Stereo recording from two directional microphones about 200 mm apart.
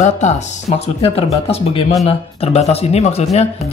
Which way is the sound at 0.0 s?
35° left (ahead or behind).